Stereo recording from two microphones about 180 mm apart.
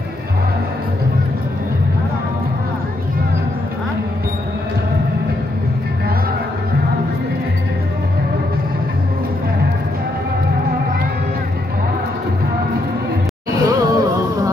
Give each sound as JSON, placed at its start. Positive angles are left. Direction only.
{"t": 13.6, "sound": "music", "side_deg": -20}